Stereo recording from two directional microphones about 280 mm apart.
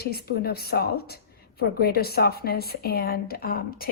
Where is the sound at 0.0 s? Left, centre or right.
Left.